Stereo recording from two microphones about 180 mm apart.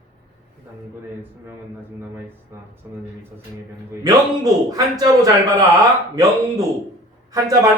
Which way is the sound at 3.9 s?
20° right (ahead or behind).